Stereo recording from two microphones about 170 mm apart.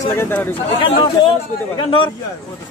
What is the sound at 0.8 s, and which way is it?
Speech, 30° left (ahead or behind).